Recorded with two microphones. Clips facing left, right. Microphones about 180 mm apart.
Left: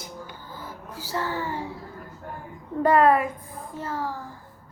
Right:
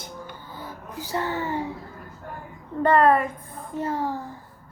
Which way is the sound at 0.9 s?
20° right (ahead or behind).